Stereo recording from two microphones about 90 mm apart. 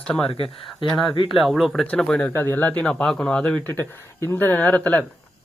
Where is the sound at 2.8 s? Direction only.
10° left (ahead or behind).